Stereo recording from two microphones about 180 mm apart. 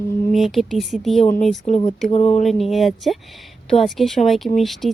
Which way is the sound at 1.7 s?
35° left (ahead or behind).